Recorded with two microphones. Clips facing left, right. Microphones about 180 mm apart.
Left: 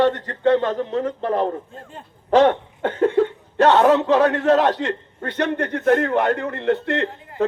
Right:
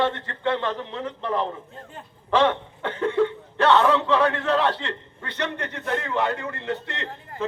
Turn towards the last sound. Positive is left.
turn(degrees=60)  # may be behind; listen again after turning